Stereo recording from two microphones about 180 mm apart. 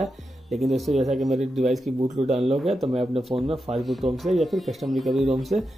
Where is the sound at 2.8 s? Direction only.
30° right (ahead or behind).